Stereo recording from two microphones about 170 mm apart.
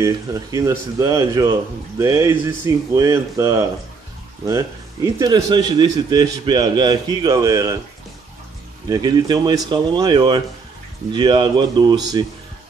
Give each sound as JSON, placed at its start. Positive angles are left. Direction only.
{"t": 0.0, "sound": "speech", "side_deg": -20}
{"t": 8.8, "sound": "speech", "side_deg": -25}